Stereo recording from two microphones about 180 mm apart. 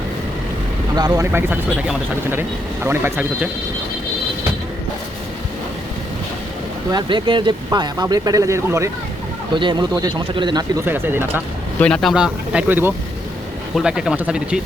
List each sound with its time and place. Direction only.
0.9 s speech: 20° right (ahead or behind)
6.9 s speech: 25° right (ahead or behind)
10.8 s speech: 10° right (ahead or behind)
11.8 s speech: 5° left (ahead or behind)